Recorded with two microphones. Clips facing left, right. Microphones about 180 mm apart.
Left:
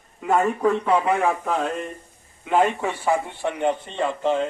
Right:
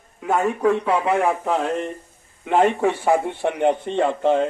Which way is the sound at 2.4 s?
55° right (ahead or behind).